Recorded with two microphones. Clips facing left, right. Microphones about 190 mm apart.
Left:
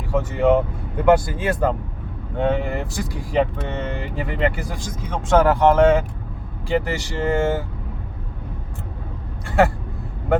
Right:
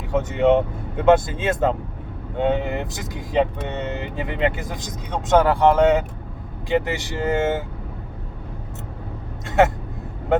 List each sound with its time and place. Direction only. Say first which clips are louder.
0.1 s speech: even; 20° right (ahead or behind)
9.5 s speech: right 1 dB; 20° right (ahead or behind)